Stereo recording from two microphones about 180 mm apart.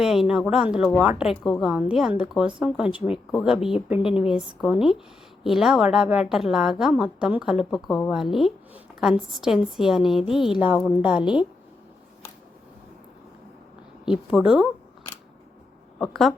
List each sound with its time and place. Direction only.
0.0 s a woman's voice: centre (ahead or behind)
10.8 s a woman's voice: 20° left (ahead or behind)
11.0 s a woman's voice: 5° right (ahead or behind)
14.0 s a woman's voice: 5° right (ahead or behind)
16.0 s a woman's voice: centre (ahead or behind)